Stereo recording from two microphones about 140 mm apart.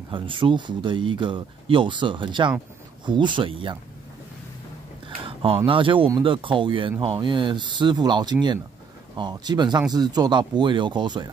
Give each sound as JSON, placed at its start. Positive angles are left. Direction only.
{"t": 0.1, "sound": "speech", "side_deg": -35}
{"t": 5.2, "sound": "a sound", "side_deg": -40}
{"t": 5.7, "sound": "speech", "side_deg": -40}